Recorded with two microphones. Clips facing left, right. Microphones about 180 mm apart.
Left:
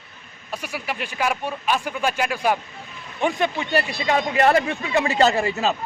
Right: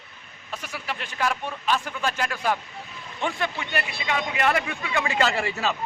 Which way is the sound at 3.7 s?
40° left (ahead or behind).